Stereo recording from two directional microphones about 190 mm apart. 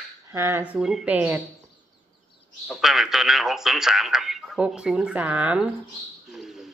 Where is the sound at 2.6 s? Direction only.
Centre (ahead or behind).